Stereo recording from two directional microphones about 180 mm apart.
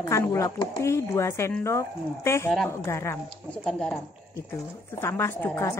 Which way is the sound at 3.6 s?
5° left (ahead or behind).